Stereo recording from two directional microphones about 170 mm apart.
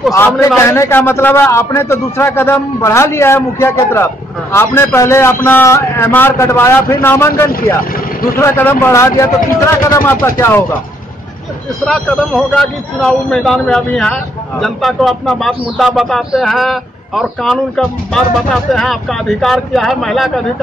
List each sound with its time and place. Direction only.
0.1 s a man's voice: 15° left (ahead or behind)
7.9 s vehicle: 60° left (ahead or behind)
8.4 s a man's voice: 15° left (ahead or behind)
11.8 s speech: centre (ahead or behind)